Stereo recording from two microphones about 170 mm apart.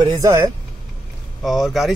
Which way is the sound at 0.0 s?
20° right (ahead or behind).